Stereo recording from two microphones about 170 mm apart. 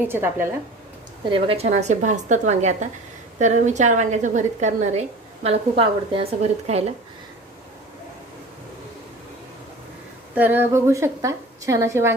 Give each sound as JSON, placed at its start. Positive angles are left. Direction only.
{"t": 0.1, "sound": "a woman's voice", "side_deg": -10}
{"t": 1.3, "sound": "a woman's voice", "side_deg": -35}
{"t": 10.3, "sound": "a woman's voice", "side_deg": -10}